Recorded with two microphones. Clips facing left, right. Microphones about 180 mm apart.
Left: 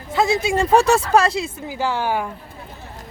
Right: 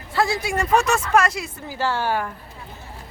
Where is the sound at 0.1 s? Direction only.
20° left (ahead or behind).